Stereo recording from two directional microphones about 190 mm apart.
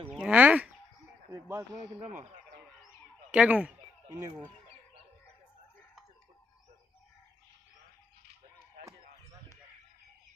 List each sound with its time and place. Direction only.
0.1 s fowl: 5° right (ahead or behind)
1.3 s speech: 15° right (ahead or behind)
2.0 s speech: 40° right (ahead or behind)
3.3 s speech: 5° right (ahead or behind)